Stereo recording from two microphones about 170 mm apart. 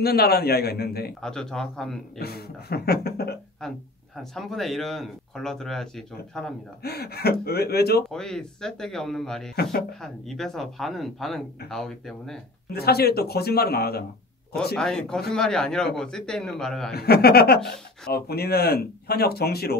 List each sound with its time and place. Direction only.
0.0 s speech: 65° left (ahead or behind)
1.2 s speech: 5° left (ahead or behind)
2.1 s speech: 65° left (ahead or behind)
3.6 s speech: 5° left (ahead or behind)
6.8 s speech: 70° left (ahead or behind)
8.1 s speech: 5° left (ahead or behind)
12.7 s speech: 70° left (ahead or behind)
14.8 s speech: 5° left (ahead or behind)
16.9 s speech: 65° left (ahead or behind)